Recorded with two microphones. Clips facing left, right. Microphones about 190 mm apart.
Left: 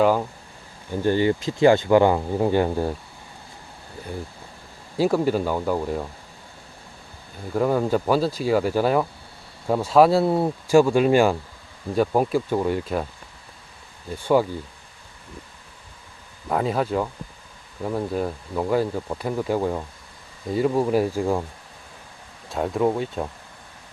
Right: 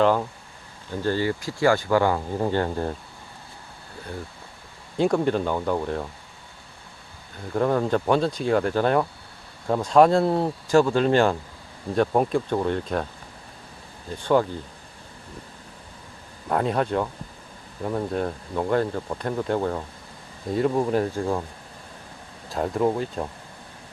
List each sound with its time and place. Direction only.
0.0 s speech: 10° left (ahead or behind)
4.9 s speech: 5° left (ahead or behind)
7.5 s speech: 5° left (ahead or behind)
14.2 s speech: 10° left (ahead or behind)
16.5 s speech: centre (ahead or behind)
22.4 s speech: centre (ahead or behind)